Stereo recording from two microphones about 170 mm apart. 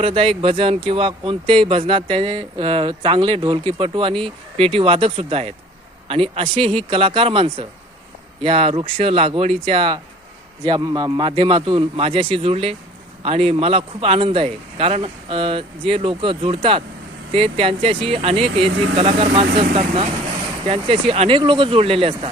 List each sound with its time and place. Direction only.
0.0 s speech: 35° right (ahead or behind)